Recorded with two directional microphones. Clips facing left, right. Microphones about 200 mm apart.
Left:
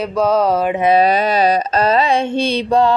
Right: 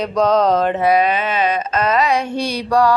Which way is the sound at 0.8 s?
30° left (ahead or behind).